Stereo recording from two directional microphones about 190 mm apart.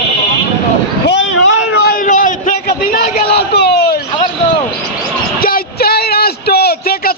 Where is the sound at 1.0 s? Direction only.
75° left (ahead or behind); by 2.0 s 60° left (ahead or behind).